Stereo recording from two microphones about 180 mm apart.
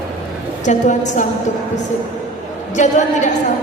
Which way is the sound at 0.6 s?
45° left (ahead or behind).